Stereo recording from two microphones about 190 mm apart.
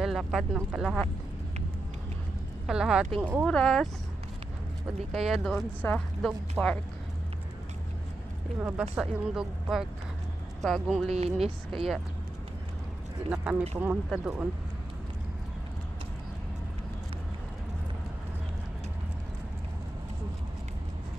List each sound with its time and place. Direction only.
0.0 s speech: centre (ahead or behind)
2.6 s speech: 5° right (ahead or behind)
3.4 s speech: 5° left (ahead or behind)
5.4 s speech: 5° left (ahead or behind)
8.5 s speech: 5° right (ahead or behind)
11.1 s speech: 35° right (ahead or behind)
13.3 s speech: 5° right (ahead or behind)